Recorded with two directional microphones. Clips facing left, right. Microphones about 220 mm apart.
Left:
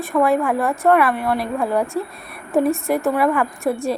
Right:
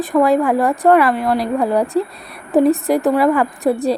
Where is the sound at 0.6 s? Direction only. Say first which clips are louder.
Right 4 dB; 15° right (ahead or behind).